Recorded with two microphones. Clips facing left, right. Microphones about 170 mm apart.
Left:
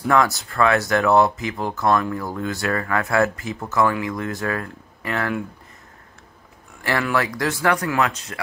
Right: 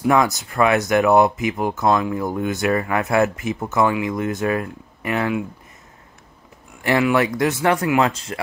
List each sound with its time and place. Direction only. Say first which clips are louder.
0.0 s speech: right 2 dB; 20° right (ahead or behind)
6.8 s speech: right 5 dB; 20° right (ahead or behind)